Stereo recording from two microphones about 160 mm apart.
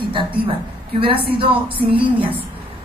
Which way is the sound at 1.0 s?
35° right (ahead or behind).